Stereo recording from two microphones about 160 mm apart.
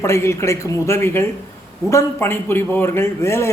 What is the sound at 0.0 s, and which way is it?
Speech, 15° left (ahead or behind).